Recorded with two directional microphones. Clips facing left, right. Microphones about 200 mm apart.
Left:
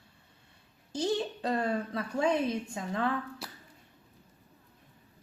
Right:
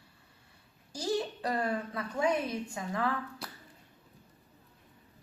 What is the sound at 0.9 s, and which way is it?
A woman's voice, 20° left (ahead or behind).